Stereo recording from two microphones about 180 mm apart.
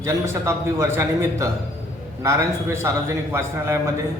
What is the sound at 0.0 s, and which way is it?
A man's voice, 15° right (ahead or behind).